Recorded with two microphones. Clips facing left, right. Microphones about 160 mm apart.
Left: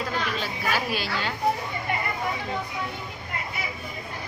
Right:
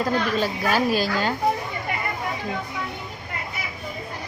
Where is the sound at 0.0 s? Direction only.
40° right (ahead or behind).